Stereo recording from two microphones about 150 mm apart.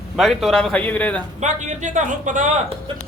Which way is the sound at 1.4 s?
55° right (ahead or behind).